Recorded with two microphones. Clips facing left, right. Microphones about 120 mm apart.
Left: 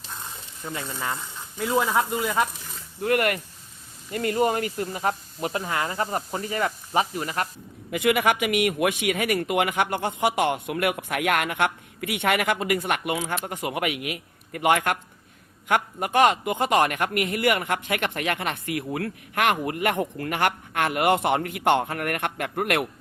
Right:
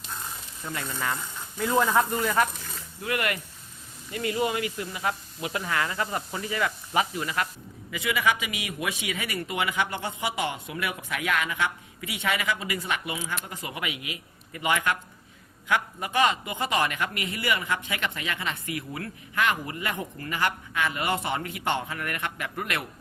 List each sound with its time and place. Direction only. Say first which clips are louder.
0.6 s speech: left 1 dB; 20° left (ahead or behind)
3.0 s speech: left 6 dB; 50° left (ahead or behind)
7.9 s a man's voice: left 5 dB; 60° left (ahead or behind)